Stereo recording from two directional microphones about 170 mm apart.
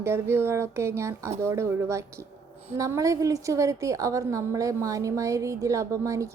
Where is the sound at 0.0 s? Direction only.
15° right (ahead or behind).